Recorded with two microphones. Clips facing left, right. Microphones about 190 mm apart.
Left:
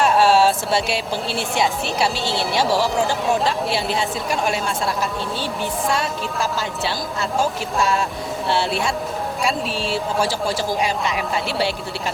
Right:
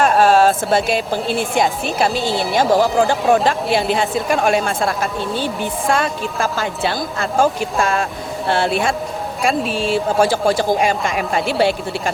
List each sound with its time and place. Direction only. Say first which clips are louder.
0.0 s a woman's voice: right 3 dB; 50° right (ahead or behind)